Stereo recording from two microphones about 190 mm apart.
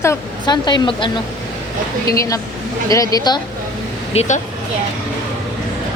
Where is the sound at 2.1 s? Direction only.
15° left (ahead or behind).